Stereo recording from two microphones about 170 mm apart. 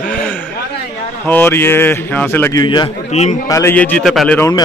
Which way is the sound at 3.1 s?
45° left (ahead or behind).